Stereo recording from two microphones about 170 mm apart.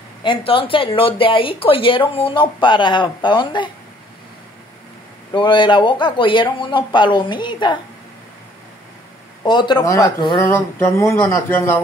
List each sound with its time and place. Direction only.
0.2 s speech: 30° left (ahead or behind)
5.3 s speech: 30° left (ahead or behind)
9.4 s speech: 25° left (ahead or behind)